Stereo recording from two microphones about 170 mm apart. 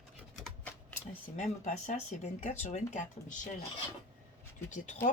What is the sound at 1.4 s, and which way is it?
Speech, 45° left (ahead or behind).